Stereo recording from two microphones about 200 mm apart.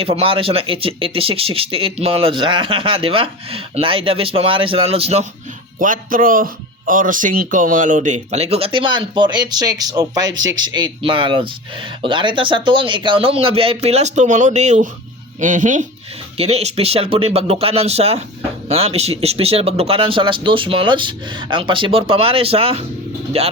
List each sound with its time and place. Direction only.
0.0 s speech: 30° right (ahead or behind)
5.8 s speech: 40° right (ahead or behind)